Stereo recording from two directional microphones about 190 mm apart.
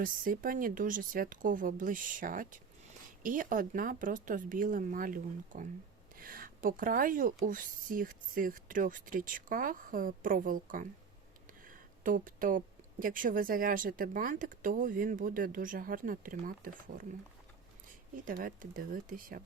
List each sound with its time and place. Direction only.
0.0 s a woman's voice: 45° right (ahead or behind)
18.3 s a woman's voice: 45° right (ahead or behind)